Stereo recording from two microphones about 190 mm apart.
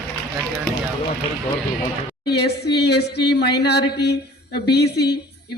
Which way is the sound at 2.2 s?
60° left (ahead or behind).